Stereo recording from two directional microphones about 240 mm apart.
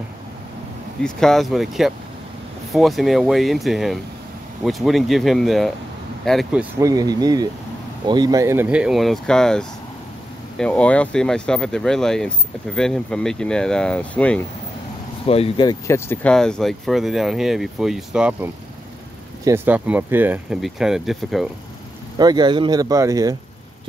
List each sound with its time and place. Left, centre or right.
1.0 s speech: centre
15.2 s speech: left; by 21.5 s centre
22.2 s speech: centre